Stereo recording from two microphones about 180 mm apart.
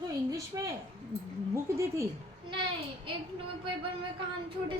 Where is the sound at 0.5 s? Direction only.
15° right (ahead or behind).